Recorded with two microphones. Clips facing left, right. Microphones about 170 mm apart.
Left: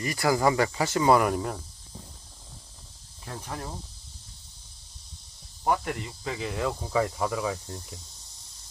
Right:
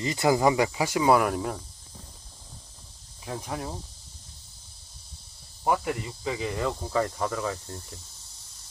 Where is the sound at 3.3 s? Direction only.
10° right (ahead or behind).